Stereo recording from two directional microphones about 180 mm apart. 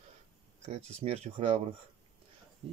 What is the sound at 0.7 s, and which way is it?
Speech, 35° right (ahead or behind).